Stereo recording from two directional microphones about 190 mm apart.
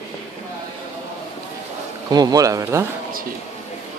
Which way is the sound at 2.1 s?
20° right (ahead or behind).